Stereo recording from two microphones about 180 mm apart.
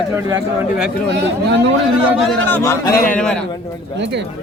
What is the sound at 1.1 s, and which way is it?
Speech, 70° right (ahead or behind).